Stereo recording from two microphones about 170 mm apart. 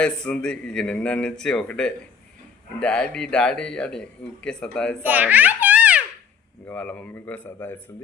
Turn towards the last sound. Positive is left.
turn(degrees=10)  # may be behind; listen again after turning